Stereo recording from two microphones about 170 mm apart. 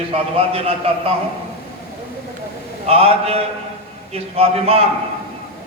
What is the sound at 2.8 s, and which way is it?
A man's voice, 35° right (ahead or behind).